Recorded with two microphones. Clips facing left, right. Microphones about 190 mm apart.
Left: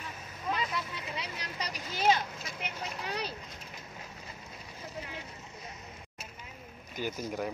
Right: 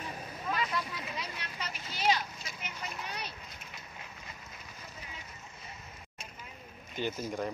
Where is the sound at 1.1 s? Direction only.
35° left (ahead or behind).